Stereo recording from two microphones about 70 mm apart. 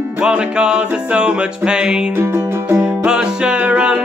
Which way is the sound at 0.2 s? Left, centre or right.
Centre.